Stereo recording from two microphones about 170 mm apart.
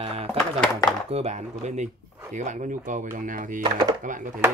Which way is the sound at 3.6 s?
25° right (ahead or behind).